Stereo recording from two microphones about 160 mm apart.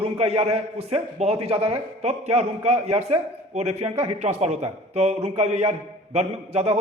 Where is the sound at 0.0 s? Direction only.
40° right (ahead or behind).